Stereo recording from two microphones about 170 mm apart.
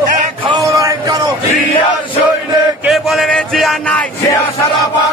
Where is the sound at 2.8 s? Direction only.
Centre (ahead or behind).